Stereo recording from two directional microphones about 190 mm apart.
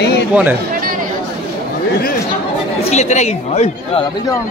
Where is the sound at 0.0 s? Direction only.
65° left (ahead or behind).